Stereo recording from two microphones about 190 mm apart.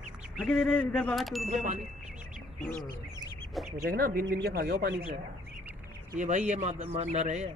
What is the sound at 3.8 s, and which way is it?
Speech, 55° right (ahead or behind).